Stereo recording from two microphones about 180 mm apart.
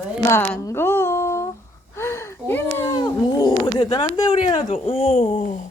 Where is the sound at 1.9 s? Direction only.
15° left (ahead or behind); by 5.6 s 45° left (ahead or behind).